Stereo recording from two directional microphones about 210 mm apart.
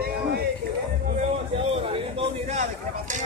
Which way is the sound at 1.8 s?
30° right (ahead or behind).